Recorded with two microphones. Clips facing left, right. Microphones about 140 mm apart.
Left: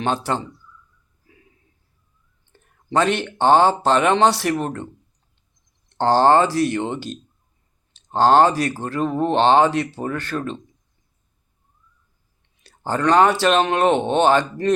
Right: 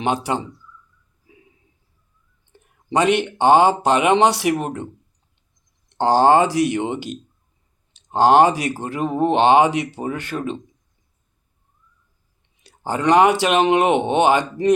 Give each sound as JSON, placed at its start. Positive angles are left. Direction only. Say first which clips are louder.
{"t": 0.0, "sound": "speech", "louder": "right 1 dB", "side_deg": -15}
{"t": 2.5, "sound": "speech", "louder": "right 1 dB", "side_deg": -10}
{"t": 5.9, "sound": "speech", "louder": "right 1 dB", "side_deg": -15}
{"t": 12.6, "sound": "speech", "louder": "right 1 dB", "side_deg": -15}